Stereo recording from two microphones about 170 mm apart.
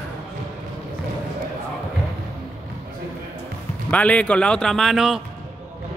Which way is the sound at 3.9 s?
10° left (ahead or behind).